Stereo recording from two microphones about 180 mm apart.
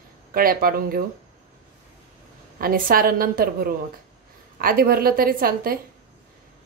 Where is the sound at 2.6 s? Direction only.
50° right (ahead or behind).